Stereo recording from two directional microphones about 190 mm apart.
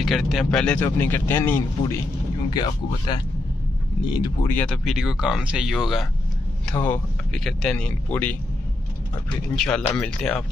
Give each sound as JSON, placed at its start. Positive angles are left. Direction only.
{"t": 0.0, "sound": "speech", "side_deg": 0}
{"t": 2.5, "sound": "speech", "side_deg": 25}
{"t": 4.5, "sound": "speech", "side_deg": 10}
{"t": 4.8, "sound": "speech", "side_deg": -5}
{"t": 9.6, "sound": "speech", "side_deg": 5}